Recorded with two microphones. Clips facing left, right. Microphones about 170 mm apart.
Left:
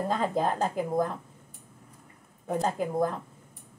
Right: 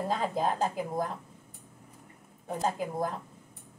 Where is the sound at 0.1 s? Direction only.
50° left (ahead or behind).